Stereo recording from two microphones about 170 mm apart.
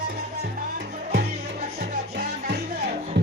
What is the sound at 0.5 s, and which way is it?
Music, 65° right (ahead or behind).